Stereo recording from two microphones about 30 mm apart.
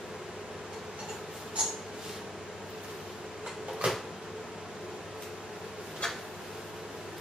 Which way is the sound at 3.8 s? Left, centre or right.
Right.